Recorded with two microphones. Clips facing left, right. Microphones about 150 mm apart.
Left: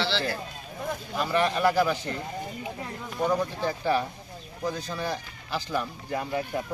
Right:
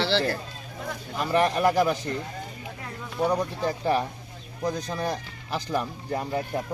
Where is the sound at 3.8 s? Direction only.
35° right (ahead or behind).